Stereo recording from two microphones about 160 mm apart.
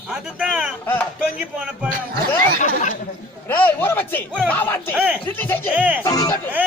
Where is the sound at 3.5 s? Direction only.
10° left (ahead or behind).